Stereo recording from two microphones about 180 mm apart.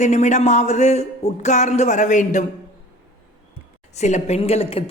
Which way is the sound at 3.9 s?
40° left (ahead or behind).